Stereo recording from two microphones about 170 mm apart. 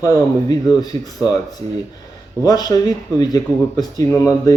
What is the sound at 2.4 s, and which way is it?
Speech, 20° left (ahead or behind).